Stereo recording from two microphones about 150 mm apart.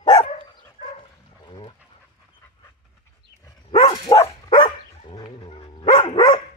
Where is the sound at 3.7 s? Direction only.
25° left (ahead or behind).